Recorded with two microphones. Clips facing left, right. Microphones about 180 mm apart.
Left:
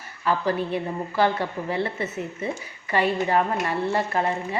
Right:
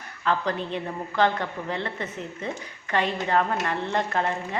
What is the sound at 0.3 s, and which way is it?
Speech, 10° left (ahead or behind).